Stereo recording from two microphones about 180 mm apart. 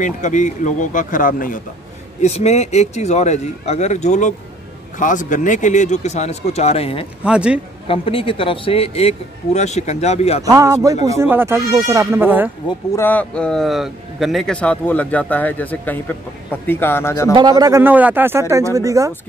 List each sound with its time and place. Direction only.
0.0 s speech: 40° left (ahead or behind)
2.2 s speech: 40° left (ahead or behind)
7.2 s a man's voice: 5° right (ahead or behind)
7.9 s speech: 30° left (ahead or behind)
10.4 s speech: 20° right (ahead or behind)
12.9 s speech: 10° left (ahead or behind)
17.3 s speech: 25° right (ahead or behind)